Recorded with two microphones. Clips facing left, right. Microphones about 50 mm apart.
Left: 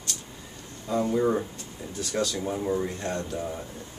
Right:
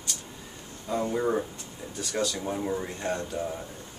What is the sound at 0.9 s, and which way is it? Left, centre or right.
Speech, centre.